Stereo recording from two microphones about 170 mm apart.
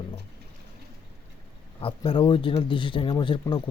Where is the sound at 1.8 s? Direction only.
30° left (ahead or behind).